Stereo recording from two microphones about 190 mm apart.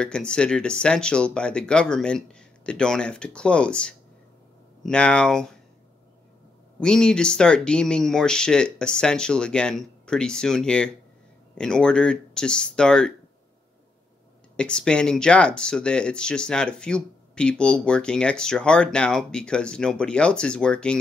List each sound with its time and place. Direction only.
0.0 s speech: 5° left (ahead or behind)
6.8 s speech: 5° left (ahead or behind)
14.6 s speech: 5° left (ahead or behind)